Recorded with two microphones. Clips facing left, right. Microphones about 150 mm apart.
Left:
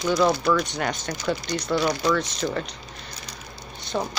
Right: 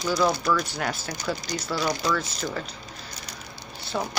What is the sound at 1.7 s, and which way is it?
Speech, 15° left (ahead or behind).